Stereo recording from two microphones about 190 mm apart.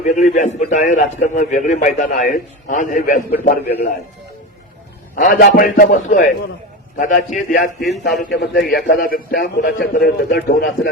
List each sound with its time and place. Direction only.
0.0 s a man's voice: 40° left (ahead or behind)
5.1 s a man's voice: 45° left (ahead or behind)
7.8 s a man's voice: centre (ahead or behind)
8.2 s a man's voice: 60° left (ahead or behind)